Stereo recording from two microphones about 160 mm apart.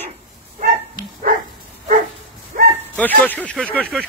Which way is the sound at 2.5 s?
55° right (ahead or behind).